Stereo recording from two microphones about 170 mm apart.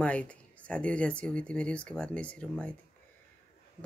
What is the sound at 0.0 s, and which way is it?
Speech, 5° left (ahead or behind).